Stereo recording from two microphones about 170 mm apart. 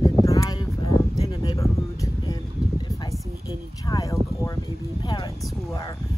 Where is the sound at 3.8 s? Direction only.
20° left (ahead or behind).